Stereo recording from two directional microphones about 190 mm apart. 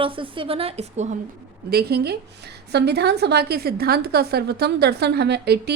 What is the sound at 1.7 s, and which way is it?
A woman's voice, 55° right (ahead or behind).